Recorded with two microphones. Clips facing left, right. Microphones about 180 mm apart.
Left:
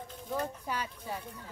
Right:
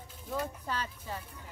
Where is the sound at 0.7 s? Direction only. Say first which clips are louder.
Left 1 dB; 10° left (ahead or behind).